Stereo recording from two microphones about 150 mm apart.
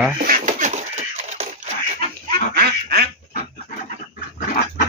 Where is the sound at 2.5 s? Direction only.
90° right.